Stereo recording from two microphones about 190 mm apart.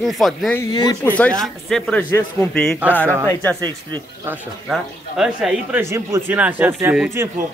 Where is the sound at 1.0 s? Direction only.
10° left (ahead or behind).